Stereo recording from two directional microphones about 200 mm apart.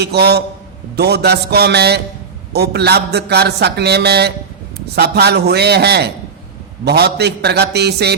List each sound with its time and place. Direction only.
0.0 s a man's voice: 55° right (ahead or behind)